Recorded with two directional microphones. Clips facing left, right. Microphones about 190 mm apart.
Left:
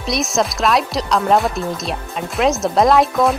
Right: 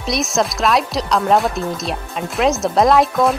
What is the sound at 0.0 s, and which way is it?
Speech, centre (ahead or behind).